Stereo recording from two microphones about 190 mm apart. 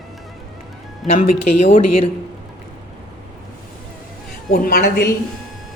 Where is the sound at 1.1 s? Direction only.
35° left (ahead or behind).